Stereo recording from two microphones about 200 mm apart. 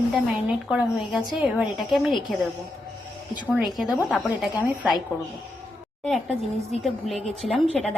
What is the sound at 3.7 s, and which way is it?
Speech, 5° right (ahead or behind).